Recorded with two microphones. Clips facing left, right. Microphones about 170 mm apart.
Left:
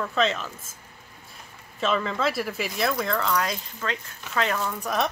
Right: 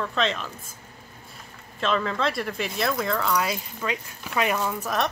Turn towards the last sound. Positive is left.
turn(degrees=0)  # may be behind; listen again after turning